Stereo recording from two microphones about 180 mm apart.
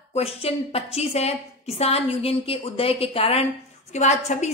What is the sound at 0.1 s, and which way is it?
A woman's voice, 35° left (ahead or behind).